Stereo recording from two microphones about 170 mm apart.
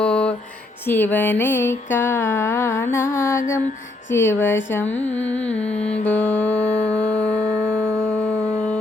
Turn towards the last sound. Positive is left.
turn(degrees=40)  # may be behind; listen again after turning